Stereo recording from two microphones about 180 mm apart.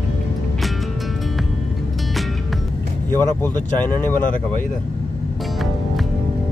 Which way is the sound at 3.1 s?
10° left (ahead or behind).